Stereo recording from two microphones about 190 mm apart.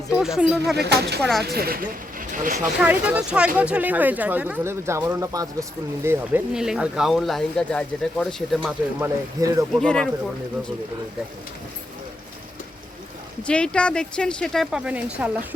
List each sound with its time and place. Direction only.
0.1 s speech: 5° right (ahead or behind)
0.8 s speech: 60° right (ahead or behind)
2.8 s speech: 5° right (ahead or behind)
9.0 s speech: 15° right (ahead or behind)
9.8 s a woman's voice: 5° left (ahead or behind)
13.5 s a woman's voice: 5° left (ahead or behind)